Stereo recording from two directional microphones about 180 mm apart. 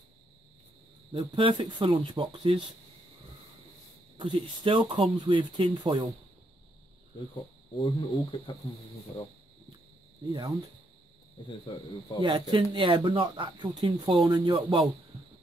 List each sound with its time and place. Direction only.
1.1 s speech: 30° right (ahead or behind)
4.2 s speech: 25° right (ahead or behind)
7.7 s speech: 25° left (ahead or behind)
10.3 s speech: 20° right (ahead or behind)
11.4 s speech: 25° left (ahead or behind)
12.2 s speech: 25° right (ahead or behind)